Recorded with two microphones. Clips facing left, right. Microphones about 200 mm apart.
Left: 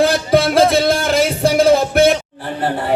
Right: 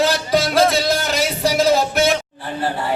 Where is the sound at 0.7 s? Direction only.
55° left (ahead or behind).